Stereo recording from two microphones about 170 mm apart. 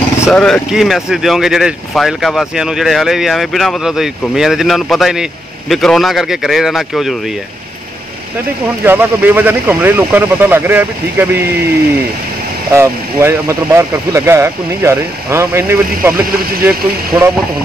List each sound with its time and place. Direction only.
0.3 s speech: centre (ahead or behind)
8.8 s speech: 10° right (ahead or behind)
12.7 s speech: 15° right (ahead or behind)